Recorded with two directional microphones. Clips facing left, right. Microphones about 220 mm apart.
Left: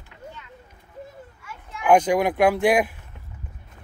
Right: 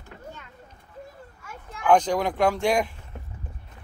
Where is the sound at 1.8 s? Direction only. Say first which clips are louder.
Left 3 dB; 10° left (ahead or behind).